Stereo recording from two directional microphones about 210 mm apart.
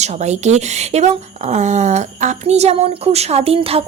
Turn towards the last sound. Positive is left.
turn(degrees=-25)  # may be behind; listen again after turning